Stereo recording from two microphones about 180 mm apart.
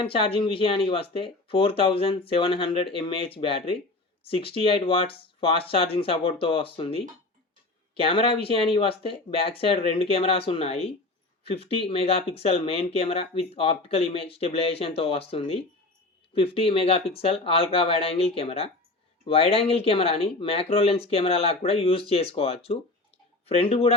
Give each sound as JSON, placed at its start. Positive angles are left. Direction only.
{"t": 0.0, "sound": "speech", "side_deg": 30}